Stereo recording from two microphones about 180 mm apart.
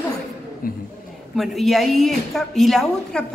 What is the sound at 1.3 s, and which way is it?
A woman's voice, centre (ahead or behind).